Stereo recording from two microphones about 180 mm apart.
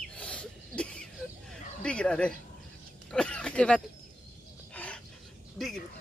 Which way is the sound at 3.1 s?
5° left (ahead or behind).